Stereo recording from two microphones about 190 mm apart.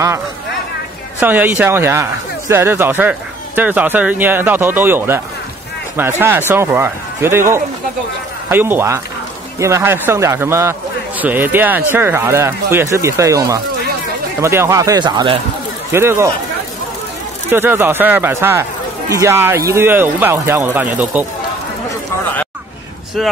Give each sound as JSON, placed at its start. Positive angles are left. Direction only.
{"t": 1.2, "sound": "speech", "side_deg": -10}
{"t": 17.5, "sound": "speech", "side_deg": -10}
{"t": 23.2, "sound": "speech", "side_deg": 0}